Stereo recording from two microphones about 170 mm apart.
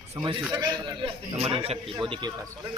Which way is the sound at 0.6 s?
25° right (ahead or behind).